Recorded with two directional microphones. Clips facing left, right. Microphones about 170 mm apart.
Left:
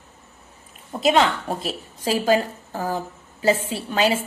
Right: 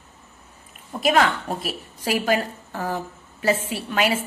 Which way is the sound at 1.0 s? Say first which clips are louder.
Left 1 dB; 25° left (ahead or behind).